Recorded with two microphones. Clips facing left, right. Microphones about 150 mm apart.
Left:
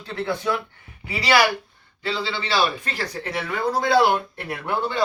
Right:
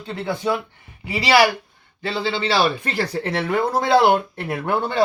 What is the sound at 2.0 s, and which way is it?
Speech, 55° right (ahead or behind).